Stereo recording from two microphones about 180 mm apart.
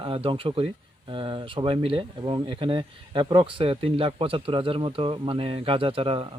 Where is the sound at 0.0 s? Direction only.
30° right (ahead or behind).